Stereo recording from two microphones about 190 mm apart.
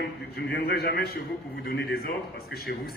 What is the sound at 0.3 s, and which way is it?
A man's voice, 60° left (ahead or behind).